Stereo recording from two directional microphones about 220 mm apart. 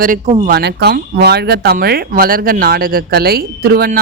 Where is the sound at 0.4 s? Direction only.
45° right (ahead or behind).